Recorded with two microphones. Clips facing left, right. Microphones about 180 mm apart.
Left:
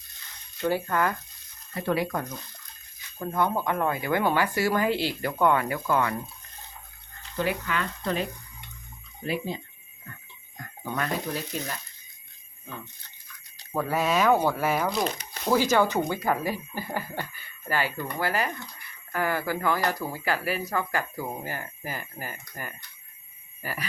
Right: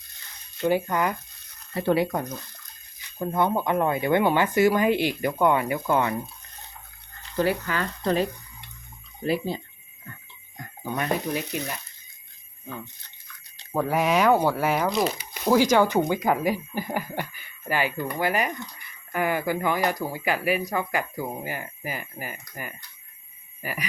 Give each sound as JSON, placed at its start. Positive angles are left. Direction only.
{"t": 0.6, "sound": "speech", "side_deg": -15}
{"t": 1.7, "sound": "speech", "side_deg": -30}
{"t": 7.3, "sound": "speech", "side_deg": -40}
{"t": 10.6, "sound": "speech", "side_deg": -20}
{"t": 13.7, "sound": "speech", "side_deg": -15}
{"t": 14.8, "sound": "speech", "side_deg": 0}